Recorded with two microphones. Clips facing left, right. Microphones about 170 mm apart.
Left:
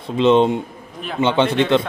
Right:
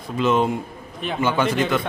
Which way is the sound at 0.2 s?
25° left (ahead or behind).